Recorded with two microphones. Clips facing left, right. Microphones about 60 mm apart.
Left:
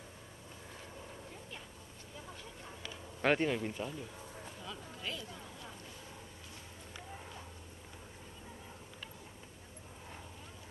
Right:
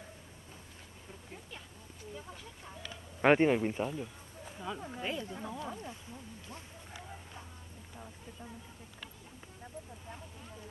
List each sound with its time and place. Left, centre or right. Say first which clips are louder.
3.2 s speech: right 6 dB; right